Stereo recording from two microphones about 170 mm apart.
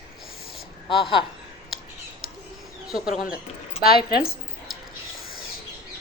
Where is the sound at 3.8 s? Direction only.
65° left (ahead or behind).